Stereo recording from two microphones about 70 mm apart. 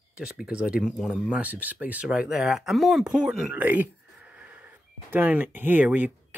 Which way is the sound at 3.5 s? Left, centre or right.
Right.